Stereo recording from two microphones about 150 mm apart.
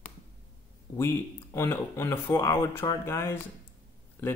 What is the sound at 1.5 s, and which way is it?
Speech, 15° left (ahead or behind).